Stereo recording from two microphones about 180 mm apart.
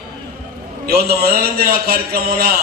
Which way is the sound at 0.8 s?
60° right (ahead or behind).